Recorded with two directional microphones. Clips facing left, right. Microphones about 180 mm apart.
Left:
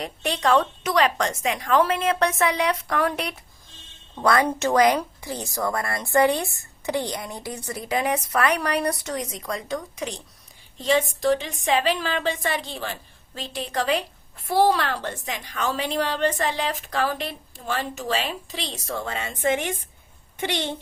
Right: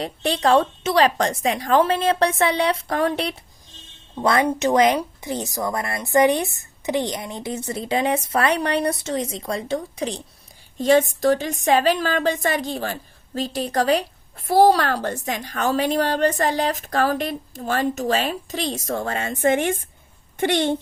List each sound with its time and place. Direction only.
0.0 s a woman's voice: 30° right (ahead or behind)
10.8 s a woman's voice: 45° right (ahead or behind)